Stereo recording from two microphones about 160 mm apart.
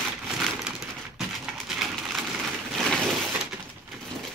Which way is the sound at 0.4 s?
5° right (ahead or behind).